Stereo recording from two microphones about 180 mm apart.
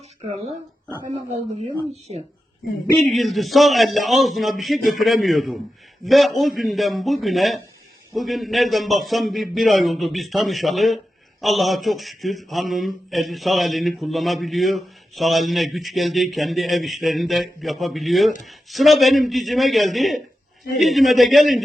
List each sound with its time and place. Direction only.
0.3 s speech: 35° right (ahead or behind)
2.8 s a man's voice: centre (ahead or behind)